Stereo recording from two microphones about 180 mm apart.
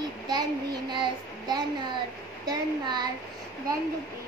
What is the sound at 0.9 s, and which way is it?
A child's voice, 25° right (ahead or behind).